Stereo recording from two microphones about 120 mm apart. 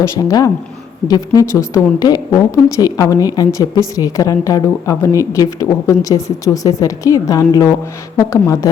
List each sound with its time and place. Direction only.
0.0 s a woman's voice: 30° left (ahead or behind)